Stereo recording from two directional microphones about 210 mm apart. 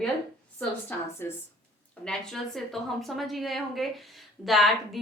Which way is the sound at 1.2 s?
10° left (ahead or behind).